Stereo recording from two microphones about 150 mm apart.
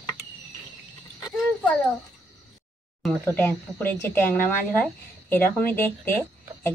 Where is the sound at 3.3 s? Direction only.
15° left (ahead or behind).